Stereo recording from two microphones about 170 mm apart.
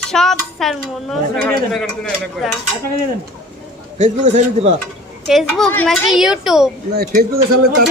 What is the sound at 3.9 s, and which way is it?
Speech, 45° right (ahead or behind).